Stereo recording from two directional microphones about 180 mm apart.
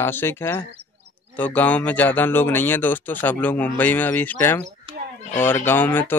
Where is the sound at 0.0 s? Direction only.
10° left (ahead or behind).